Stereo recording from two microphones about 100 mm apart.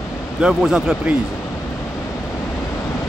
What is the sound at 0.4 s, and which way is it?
Speech, 5° right (ahead or behind).